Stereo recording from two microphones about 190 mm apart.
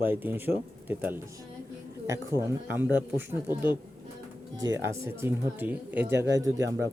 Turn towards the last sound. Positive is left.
turn(degrees=-15)  # may be behind; listen again after turning